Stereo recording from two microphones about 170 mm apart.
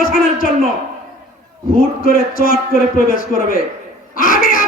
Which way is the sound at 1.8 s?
55° left (ahead or behind).